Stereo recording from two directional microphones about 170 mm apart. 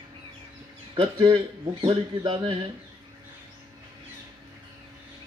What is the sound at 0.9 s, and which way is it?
A man's voice, 30° right (ahead or behind).